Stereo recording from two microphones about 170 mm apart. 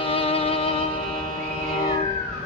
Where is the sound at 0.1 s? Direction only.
35° left (ahead or behind).